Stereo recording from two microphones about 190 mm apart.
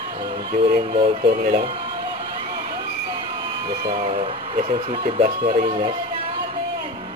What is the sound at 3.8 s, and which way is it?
Speech, 35° right (ahead or behind).